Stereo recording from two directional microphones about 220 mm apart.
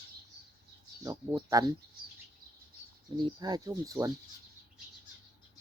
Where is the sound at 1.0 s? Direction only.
15° right (ahead or behind).